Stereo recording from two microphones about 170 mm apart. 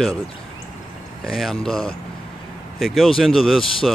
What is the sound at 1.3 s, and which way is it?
Speech, centre (ahead or behind).